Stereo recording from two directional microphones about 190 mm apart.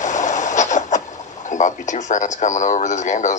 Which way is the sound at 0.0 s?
40° left (ahead or behind).